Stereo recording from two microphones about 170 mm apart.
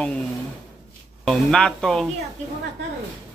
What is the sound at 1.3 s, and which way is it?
Speech, 5° left (ahead or behind).